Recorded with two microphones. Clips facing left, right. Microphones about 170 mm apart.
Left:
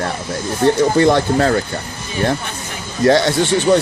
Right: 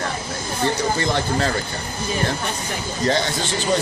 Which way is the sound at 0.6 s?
60° left (ahead or behind).